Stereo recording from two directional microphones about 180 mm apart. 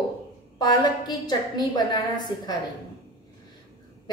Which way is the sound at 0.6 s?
25° left (ahead or behind).